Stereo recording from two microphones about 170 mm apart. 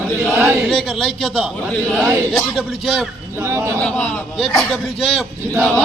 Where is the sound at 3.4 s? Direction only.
15° right (ahead or behind).